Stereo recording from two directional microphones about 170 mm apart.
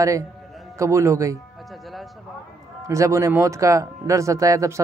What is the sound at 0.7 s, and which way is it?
Speech, 15° right (ahead or behind).